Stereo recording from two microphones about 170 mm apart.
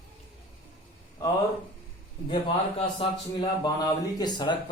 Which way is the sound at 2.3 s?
30° left (ahead or behind).